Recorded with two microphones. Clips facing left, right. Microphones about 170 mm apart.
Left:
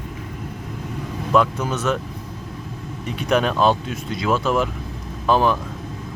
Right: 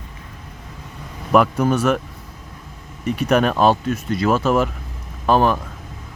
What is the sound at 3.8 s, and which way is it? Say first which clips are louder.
Speech: right 6 dB; 50° right (ahead or behind).